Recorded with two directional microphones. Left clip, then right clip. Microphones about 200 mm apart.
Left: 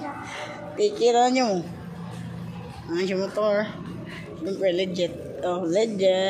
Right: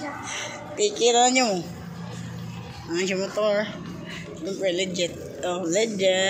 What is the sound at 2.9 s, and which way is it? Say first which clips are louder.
Speech: even; 10° left (ahead or behind).